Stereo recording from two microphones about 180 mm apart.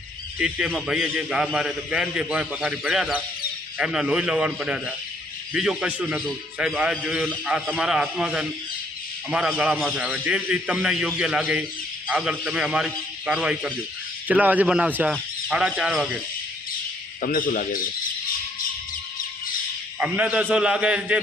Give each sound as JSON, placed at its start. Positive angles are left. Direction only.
{"t": 0.3, "sound": "a man's voice", "side_deg": -5}
{"t": 17.2, "sound": "a man's voice", "side_deg": 50}
{"t": 20.0, "sound": "a man's voice", "side_deg": -5}